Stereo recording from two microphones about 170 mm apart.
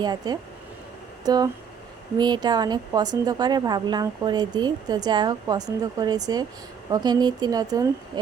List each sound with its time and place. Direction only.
0.0 s a woman's voice: 25° right (ahead or behind)